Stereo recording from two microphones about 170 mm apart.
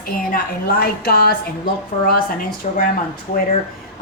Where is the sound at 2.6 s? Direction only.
45° left (ahead or behind).